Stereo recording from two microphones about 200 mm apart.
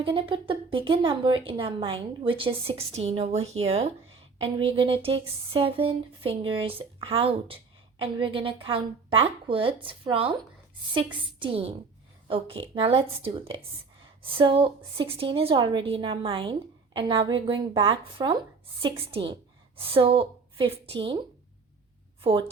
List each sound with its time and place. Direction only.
0.0 s a woman's voice: 25° right (ahead or behind)
22.2 s a woman's voice: 25° right (ahead or behind)